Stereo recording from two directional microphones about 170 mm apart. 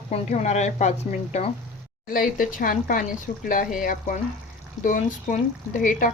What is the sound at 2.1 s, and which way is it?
A woman's voice, 55° left (ahead or behind).